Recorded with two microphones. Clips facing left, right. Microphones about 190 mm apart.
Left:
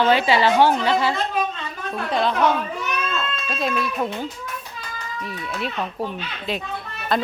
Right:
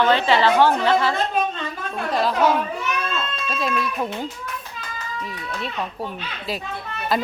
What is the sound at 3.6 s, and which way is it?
Speech, centre (ahead or behind).